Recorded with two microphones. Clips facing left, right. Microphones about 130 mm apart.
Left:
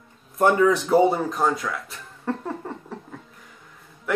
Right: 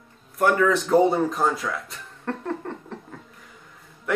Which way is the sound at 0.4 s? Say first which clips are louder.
Left 2 dB; 20° left (ahead or behind).